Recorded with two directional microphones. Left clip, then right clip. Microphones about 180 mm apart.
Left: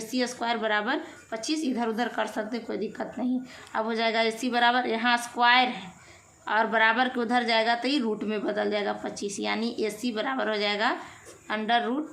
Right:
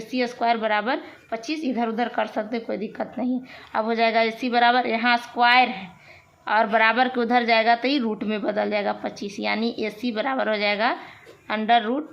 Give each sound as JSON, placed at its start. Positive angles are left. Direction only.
{"t": 0.1, "sound": "a woman's voice", "side_deg": -30}